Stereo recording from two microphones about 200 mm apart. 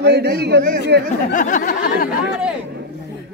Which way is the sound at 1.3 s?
40° left (ahead or behind).